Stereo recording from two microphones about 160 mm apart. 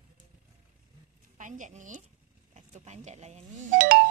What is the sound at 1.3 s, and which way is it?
Speech, 55° right (ahead or behind).